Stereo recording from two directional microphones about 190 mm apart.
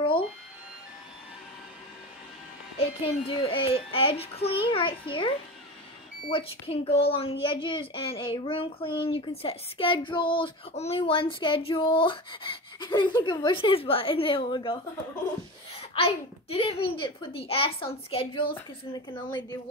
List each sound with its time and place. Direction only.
2.8 s speech: 30° left (ahead or behind)
15.9 s speech: 30° left (ahead or behind)